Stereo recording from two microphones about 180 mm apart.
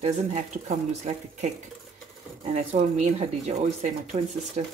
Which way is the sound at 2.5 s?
40° right (ahead or behind).